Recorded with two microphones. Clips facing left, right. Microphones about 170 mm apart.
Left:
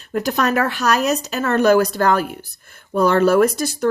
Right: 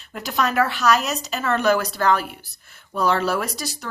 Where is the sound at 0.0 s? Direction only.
45° left (ahead or behind).